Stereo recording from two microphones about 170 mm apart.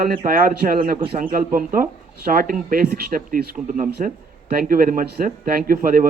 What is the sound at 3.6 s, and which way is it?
A woman's voice, 50° right (ahead or behind).